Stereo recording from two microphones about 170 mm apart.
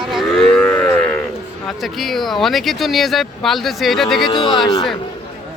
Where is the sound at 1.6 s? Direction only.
Centre (ahead or behind).